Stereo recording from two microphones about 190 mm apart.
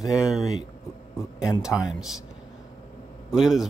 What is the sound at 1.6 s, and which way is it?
Speech, 5° right (ahead or behind).